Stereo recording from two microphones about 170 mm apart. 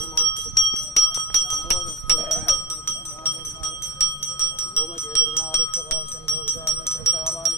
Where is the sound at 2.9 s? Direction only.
15° left (ahead or behind).